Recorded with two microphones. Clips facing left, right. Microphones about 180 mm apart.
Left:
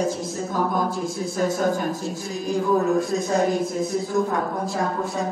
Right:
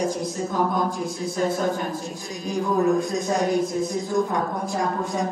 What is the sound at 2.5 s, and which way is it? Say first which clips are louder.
Speech: even; centre (ahead or behind).